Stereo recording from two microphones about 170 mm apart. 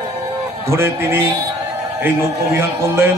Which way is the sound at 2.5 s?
15° right (ahead or behind).